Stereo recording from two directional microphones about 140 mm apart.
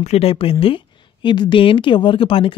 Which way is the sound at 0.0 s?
50° left (ahead or behind).